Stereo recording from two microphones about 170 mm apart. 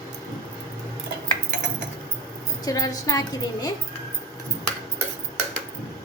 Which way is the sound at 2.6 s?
20° left (ahead or behind).